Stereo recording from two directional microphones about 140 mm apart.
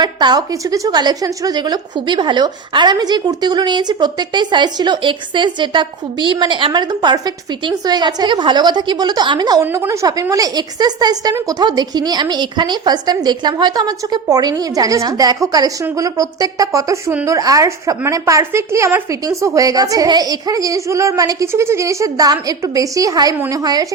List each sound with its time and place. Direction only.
0.0 s a woman's voice: 30° right (ahead or behind)